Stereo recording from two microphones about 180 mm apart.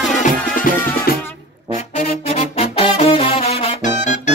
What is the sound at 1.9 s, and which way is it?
Music, 40° left (ahead or behind).